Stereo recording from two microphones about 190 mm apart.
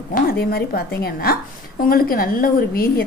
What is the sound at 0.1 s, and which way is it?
A woman's voice, 55° left (ahead or behind).